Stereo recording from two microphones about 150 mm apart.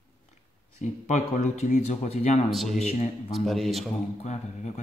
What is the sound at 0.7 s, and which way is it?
Speech, 55° left (ahead or behind).